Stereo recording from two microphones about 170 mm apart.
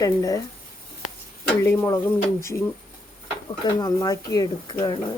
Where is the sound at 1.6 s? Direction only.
15° left (ahead or behind).